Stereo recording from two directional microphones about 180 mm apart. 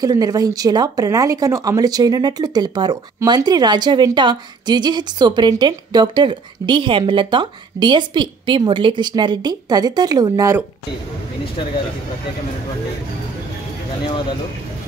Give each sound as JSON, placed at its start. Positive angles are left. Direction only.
{"t": 0.0, "sound": "speech", "side_deg": -20}